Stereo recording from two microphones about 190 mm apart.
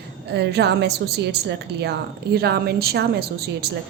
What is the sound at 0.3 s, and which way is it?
A woman's voice, 60° right (ahead or behind).